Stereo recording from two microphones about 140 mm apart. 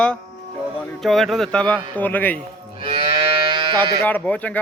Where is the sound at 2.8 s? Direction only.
35° right (ahead or behind).